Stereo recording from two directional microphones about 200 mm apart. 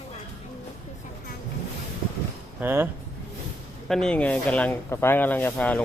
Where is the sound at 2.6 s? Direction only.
10° right (ahead or behind).